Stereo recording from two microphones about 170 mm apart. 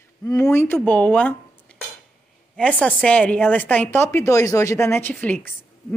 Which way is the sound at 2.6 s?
5° left (ahead or behind).